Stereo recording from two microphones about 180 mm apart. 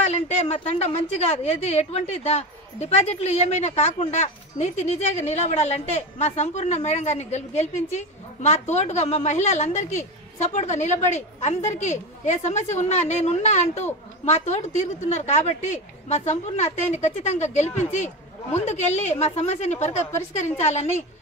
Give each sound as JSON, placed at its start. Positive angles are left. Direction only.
{"t": 0.0, "sound": "a woman's voice", "side_deg": 35}